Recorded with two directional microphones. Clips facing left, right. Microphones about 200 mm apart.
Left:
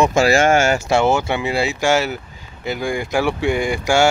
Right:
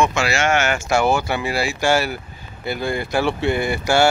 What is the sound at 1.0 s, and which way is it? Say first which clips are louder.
Speech: right 1 dB; 20° left (ahead or behind).